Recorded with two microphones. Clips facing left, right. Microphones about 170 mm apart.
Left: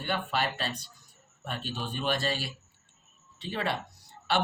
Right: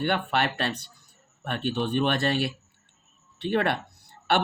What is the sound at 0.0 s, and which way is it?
A man's voice, 65° right (ahead or behind).